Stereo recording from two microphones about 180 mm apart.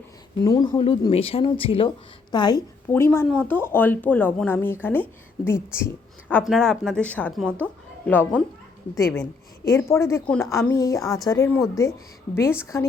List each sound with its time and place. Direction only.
0.4 s speech: 20° left (ahead or behind)
2.9 s speech: 15° left (ahead or behind)
6.4 s speech: centre (ahead or behind)
9.6 s speech: 15° left (ahead or behind)